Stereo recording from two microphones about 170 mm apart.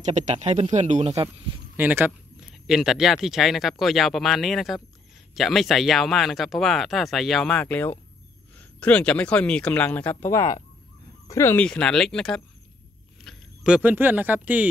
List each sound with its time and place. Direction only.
0.0 s speech: 45° right (ahead or behind)
1.8 s speech: 10° right (ahead or behind)
13.2 s a sound: centre (ahead or behind)
13.7 s speech: 10° right (ahead or behind)